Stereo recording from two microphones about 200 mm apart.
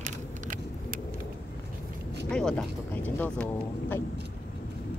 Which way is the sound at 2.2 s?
5° left (ahead or behind).